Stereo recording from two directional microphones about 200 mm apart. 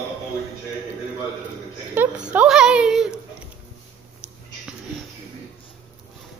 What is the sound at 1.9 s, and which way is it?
Speech, 5° right (ahead or behind).